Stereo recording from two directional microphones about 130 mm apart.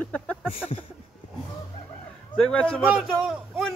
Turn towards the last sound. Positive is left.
turn(degrees=0)  # may be behind; listen again after turning